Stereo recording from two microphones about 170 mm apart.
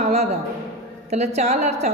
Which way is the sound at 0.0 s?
40° right (ahead or behind).